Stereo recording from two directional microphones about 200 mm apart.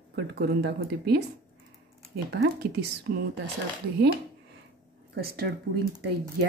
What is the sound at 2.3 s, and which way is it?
Speech, 55° right (ahead or behind).